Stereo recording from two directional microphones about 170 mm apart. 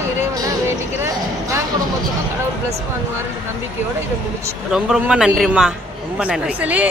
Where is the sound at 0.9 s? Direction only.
15° right (ahead or behind).